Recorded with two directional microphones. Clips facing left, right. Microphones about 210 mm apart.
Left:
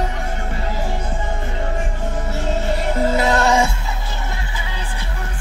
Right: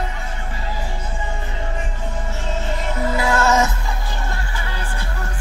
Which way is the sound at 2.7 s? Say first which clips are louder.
Left 4 dB; 30° left (ahead or behind).